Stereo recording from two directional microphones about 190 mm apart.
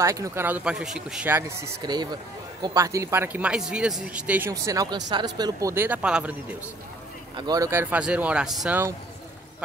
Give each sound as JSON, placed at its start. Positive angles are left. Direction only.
{"t": 0.0, "sound": "speech", "side_deg": -15}
{"t": 1.8, "sound": "speech", "side_deg": -20}
{"t": 7.3, "sound": "speech", "side_deg": -20}